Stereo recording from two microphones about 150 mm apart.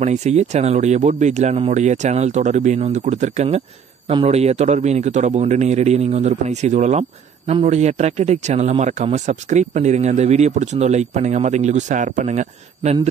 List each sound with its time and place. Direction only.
0.0 s a man's voice: 50° right (ahead or behind)